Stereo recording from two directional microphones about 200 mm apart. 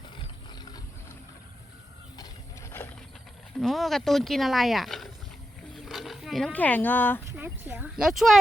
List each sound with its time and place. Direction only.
0.2 s wild animals: 20° left (ahead or behind)
2.1 s a sound: 15° left (ahead or behind)
3.6 s speech: centre (ahead or behind)
7.3 s speech: 10° right (ahead or behind)